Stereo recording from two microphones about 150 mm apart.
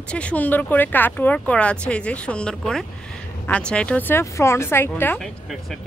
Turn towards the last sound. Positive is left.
turn(degrees=15)  # may be behind; listen again after turning